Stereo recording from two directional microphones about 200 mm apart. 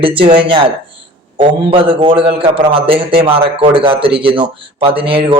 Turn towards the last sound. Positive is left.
turn(degrees=-25)  # may be behind; listen again after turning